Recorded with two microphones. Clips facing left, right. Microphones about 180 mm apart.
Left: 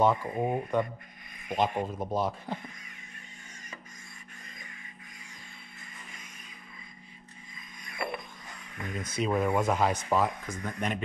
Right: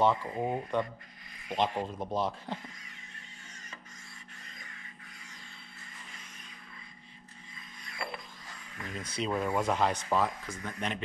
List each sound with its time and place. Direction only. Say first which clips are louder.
0.0 s speech: left 2 dB; 15° left (ahead or behind)
7.8 s a sound: left 5 dB; 20° left (ahead or behind)
8.9 s speech: left 4 dB; 45° left (ahead or behind)
9.3 s speech: left 3 dB; 20° left (ahead or behind)